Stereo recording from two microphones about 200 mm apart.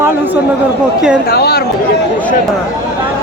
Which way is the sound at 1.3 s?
50° left (ahead or behind).